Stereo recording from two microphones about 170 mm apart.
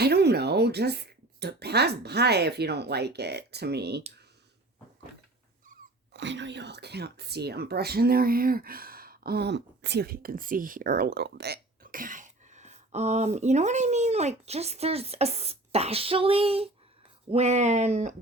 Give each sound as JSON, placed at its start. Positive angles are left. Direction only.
{"t": 0.0, "sound": "speech", "side_deg": -70}
{"t": 6.1, "sound": "speech", "side_deg": -90}